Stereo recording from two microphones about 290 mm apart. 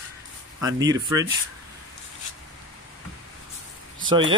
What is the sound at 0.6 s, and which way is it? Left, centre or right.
Speech, centre.